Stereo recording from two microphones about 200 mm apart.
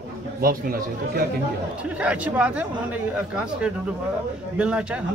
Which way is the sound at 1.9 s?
5° right (ahead or behind).